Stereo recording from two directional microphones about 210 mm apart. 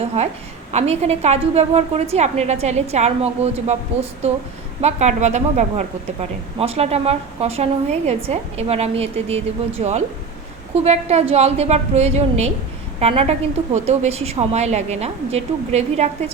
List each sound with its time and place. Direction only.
0.0 s a woman's voice: 30° right (ahead or behind)